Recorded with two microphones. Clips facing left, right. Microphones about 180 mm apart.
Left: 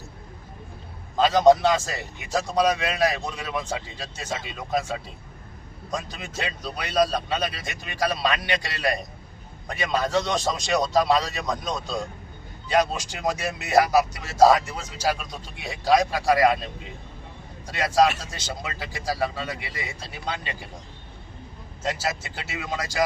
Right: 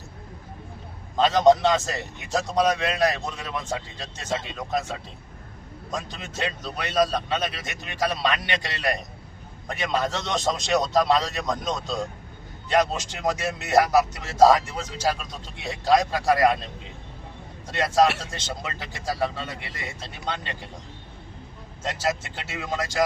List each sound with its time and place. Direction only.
1.1 s a man's voice: centre (ahead or behind)
17.7 s a man's voice: centre (ahead or behind)
21.8 s a man's voice: centre (ahead or behind)